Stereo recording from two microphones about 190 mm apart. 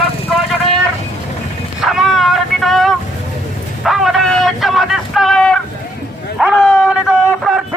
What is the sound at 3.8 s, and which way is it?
Vehicle, centre (ahead or behind).